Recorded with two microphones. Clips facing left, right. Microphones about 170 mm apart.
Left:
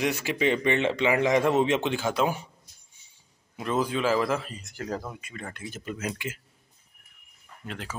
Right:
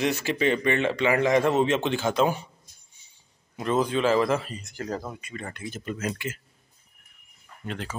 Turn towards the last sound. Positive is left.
turn(degrees=5)  # may be behind; listen again after turning